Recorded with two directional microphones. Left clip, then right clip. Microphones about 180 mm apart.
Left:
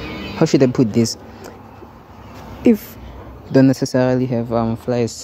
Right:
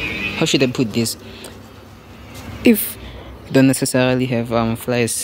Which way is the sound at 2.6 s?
15° left (ahead or behind).